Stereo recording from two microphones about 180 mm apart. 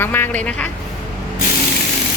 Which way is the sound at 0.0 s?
10° left (ahead or behind).